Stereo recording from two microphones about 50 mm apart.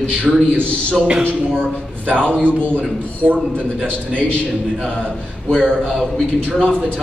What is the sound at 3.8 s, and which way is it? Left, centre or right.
Speech, left.